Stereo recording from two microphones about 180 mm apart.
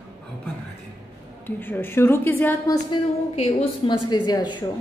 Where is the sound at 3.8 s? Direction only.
25° left (ahead or behind).